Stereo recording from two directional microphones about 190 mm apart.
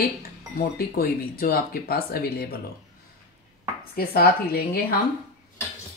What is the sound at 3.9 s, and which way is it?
Speech, 50° left (ahead or behind).